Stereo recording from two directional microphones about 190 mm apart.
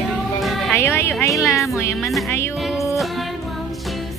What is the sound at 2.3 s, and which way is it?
Music, 15° left (ahead or behind).